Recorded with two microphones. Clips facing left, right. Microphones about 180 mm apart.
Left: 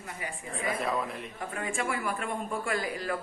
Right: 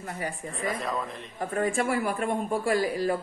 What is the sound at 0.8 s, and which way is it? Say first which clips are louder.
Speech: even; 5° left (ahead or behind).